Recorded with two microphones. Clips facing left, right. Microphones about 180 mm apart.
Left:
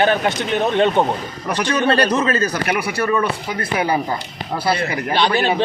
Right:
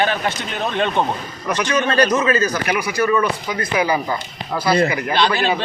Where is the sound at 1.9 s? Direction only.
30° left (ahead or behind).